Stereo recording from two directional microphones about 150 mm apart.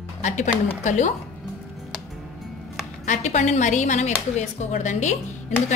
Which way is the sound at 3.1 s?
55° left (ahead or behind).